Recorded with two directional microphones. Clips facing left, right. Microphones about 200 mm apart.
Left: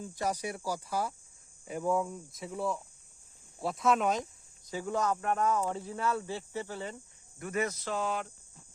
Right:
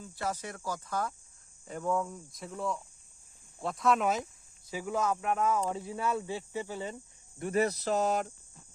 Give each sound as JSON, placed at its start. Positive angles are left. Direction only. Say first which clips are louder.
{"t": 0.0, "sound": "cricket", "louder": "left 3 dB", "side_deg": 15}
{"t": 3.6, "sound": "speech", "louder": "even", "side_deg": 0}
{"t": 7.3, "sound": "speech", "louder": "right 4 dB", "side_deg": -30}